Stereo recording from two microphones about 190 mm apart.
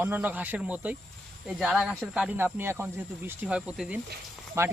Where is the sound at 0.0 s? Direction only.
10° right (ahead or behind).